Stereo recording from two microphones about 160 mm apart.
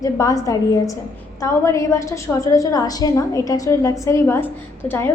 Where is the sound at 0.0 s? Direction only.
20° left (ahead or behind).